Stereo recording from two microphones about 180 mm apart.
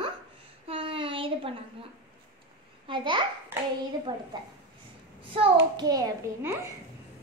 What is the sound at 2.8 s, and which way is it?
A child's voice, 25° right (ahead or behind).